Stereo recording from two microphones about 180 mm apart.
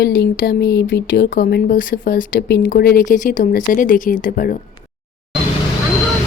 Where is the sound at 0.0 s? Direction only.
55° left (ahead or behind).